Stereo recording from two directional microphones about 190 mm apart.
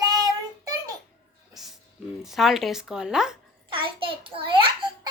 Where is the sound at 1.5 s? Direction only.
Centre (ahead or behind).